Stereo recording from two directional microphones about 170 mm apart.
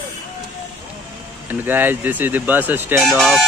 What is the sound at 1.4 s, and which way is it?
Speech, 10° right (ahead or behind).